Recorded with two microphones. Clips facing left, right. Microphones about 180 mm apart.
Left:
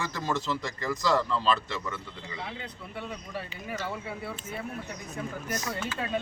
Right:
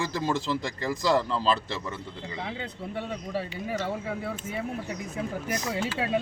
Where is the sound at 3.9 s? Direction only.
45° right (ahead or behind).